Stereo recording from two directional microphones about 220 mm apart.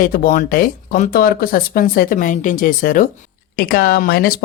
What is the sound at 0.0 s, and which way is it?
Speech, 40° left (ahead or behind).